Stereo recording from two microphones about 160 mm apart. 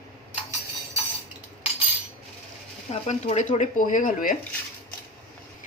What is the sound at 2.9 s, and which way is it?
Speech, 45° left (ahead or behind).